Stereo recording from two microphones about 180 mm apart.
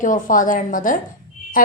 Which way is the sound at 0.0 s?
45° left (ahead or behind).